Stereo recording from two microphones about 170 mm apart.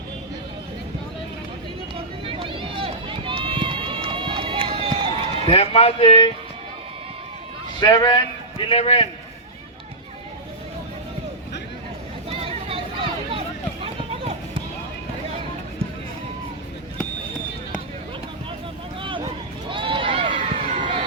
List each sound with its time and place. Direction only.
2.2 s run: 30° right (ahead or behind)
5.5 s speech: 35° left (ahead or behind)
7.8 s a man's voice: 25° left (ahead or behind)
12.3 s a sound: 35° right (ahead or behind)
19.0 s a sound: 30° right (ahead or behind)
19.7 s run: 30° right (ahead or behind)